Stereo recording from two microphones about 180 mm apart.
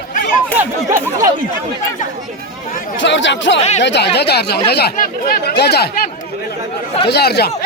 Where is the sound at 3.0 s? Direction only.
90° left.